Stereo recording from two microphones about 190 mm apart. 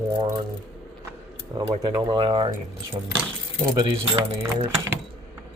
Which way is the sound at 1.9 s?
25° right (ahead or behind).